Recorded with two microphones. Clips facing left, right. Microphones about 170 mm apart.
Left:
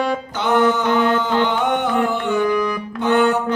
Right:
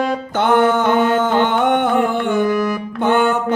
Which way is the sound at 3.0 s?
55° right (ahead or behind).